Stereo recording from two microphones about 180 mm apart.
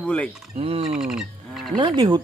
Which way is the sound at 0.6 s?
35° right (ahead or behind).